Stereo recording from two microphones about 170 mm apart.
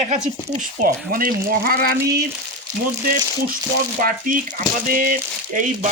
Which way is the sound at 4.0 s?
55° right (ahead or behind).